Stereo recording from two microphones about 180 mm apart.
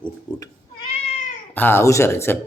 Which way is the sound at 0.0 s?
20° left (ahead or behind).